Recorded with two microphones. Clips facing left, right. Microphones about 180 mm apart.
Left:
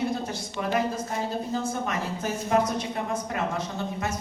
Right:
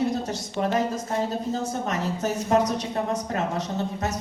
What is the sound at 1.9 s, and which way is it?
Speech, 40° right (ahead or behind).